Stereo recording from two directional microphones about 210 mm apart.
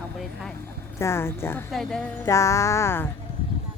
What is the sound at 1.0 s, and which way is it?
A woman's voice, 10° left (ahead or behind).